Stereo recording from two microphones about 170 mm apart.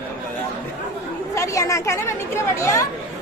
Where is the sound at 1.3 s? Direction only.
20° left (ahead or behind).